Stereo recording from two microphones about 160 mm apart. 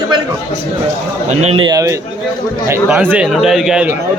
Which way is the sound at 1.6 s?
20° right (ahead or behind).